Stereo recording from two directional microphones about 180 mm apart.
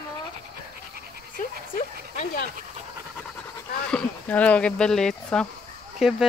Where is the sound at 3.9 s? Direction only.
10° left (ahead or behind).